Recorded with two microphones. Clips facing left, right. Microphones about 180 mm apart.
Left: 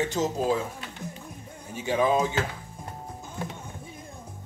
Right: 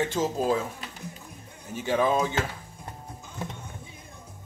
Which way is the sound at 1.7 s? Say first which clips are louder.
Left 1 dB; 15° left (ahead or behind).